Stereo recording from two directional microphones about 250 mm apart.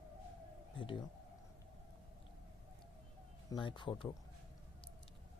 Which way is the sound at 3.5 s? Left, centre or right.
Centre.